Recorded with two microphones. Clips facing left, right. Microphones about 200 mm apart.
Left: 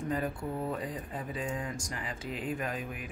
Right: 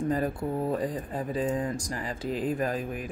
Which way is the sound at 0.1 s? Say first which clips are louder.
Right 5 dB; 35° right (ahead or behind).